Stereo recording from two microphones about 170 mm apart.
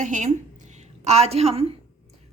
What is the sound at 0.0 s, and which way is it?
A woman's voice, 45° right (ahead or behind).